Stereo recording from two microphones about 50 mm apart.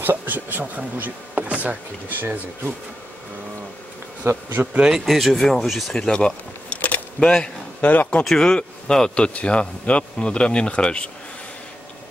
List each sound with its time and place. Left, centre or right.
0.0 s bee: right
2.0 s speech: right
4.2 s speech: right
4.9 s speech: centre
6.0 s speech: centre
6.7 s keys jangling: left
7.2 s speech: centre
7.8 s speech: left
8.2 s speech: centre